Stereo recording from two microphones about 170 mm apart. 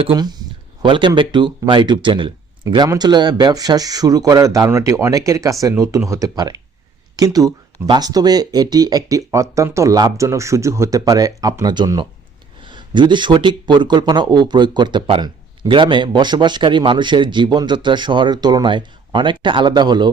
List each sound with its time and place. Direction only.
0.0 s speech: 25° right (ahead or behind)